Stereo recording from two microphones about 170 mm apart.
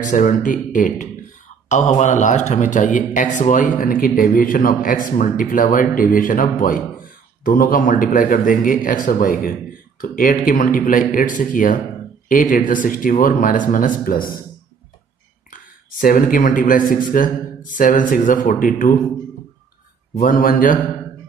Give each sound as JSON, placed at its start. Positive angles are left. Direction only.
{"t": 0.0, "sound": "a man's voice", "side_deg": 50}
{"t": 15.5, "sound": "a man's voice", "side_deg": 55}
{"t": 20.2, "sound": "a man's voice", "side_deg": 55}